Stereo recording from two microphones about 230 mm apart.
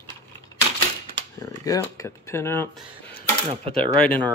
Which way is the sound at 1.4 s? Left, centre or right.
Centre.